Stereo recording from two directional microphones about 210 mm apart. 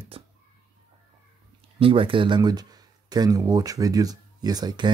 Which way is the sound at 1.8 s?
25° right (ahead or behind).